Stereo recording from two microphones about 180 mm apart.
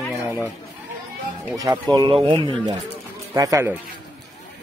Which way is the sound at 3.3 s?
15° right (ahead or behind).